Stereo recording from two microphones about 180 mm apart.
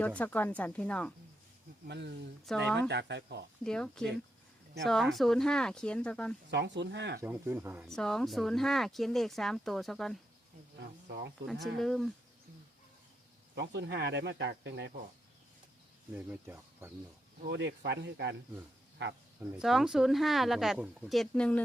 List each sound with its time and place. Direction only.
0.2 s speech: 10° left (ahead or behind)
1.9 s speech: 70° right (ahead or behind)
2.5 s speech: centre (ahead or behind)
2.9 s speech: 70° right (ahead or behind)
3.6 s speech: 5° left (ahead or behind)
6.5 s speech: 75° right (ahead or behind)
7.2 s speech: 10° right (ahead or behind)
7.9 s speech: 5° left (ahead or behind)
10.8 s speech: 70° right (ahead or behind)
11.8 s speech: centre (ahead or behind)
13.6 s speech: 75° right (ahead or behind)
16.1 s speech: 10° right (ahead or behind)
17.5 s speech: 75° right (ahead or behind)
19.4 s speech: centre (ahead or behind)